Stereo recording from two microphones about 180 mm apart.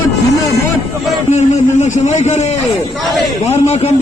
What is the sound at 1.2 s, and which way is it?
A man's voice, 40° left (ahead or behind).